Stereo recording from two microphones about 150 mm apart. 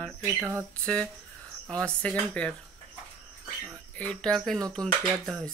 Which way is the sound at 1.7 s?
5° left (ahead or behind).